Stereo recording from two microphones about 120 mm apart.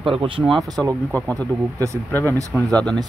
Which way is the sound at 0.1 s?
50° right (ahead or behind).